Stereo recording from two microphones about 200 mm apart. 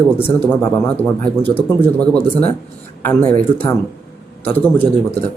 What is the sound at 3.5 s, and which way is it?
Speech, 25° left (ahead or behind).